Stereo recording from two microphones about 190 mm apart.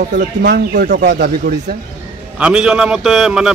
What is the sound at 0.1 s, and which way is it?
Speech, 55° right (ahead or behind).